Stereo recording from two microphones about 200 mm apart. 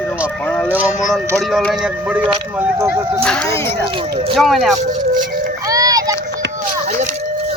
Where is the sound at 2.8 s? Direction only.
15° right (ahead or behind).